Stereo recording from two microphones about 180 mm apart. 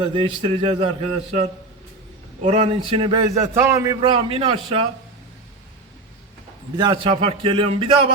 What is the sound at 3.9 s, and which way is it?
Speech, 30° right (ahead or behind).